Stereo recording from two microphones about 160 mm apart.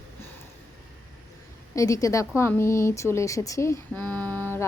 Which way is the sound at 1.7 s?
20° left (ahead or behind).